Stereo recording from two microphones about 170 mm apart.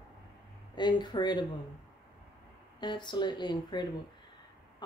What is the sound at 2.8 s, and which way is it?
Speech, 25° left (ahead or behind).